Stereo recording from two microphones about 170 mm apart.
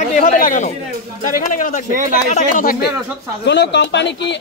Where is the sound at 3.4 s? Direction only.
90° left.